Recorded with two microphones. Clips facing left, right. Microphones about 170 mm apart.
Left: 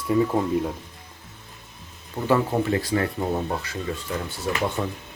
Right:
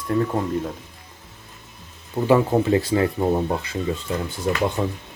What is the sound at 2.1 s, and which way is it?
Speech, 20° right (ahead or behind).